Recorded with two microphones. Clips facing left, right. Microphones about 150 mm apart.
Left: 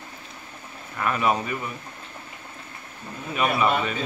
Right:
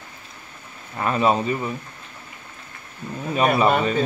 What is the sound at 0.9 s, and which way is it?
Speech, 30° right (ahead or behind).